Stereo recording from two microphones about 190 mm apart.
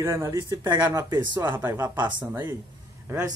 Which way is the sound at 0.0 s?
15° right (ahead or behind).